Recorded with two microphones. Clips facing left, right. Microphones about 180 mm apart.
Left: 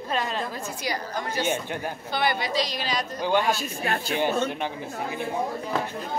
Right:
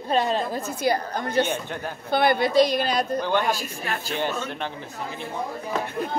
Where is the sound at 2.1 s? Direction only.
55° right (ahead or behind).